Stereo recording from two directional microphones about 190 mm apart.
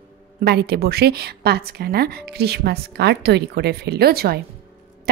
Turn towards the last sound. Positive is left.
turn(degrees=-55)  # may be behind; listen again after turning